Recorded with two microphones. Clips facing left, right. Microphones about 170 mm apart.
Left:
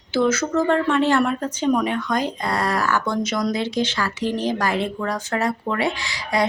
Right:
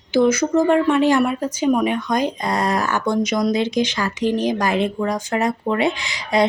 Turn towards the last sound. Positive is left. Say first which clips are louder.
# right 4 dB
turn(degrees=-20)  # may be behind; listen again after turning